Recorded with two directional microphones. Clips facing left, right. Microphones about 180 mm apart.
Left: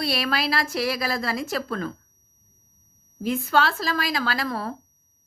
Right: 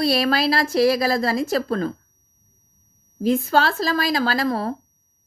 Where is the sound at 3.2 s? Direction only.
35° right (ahead or behind).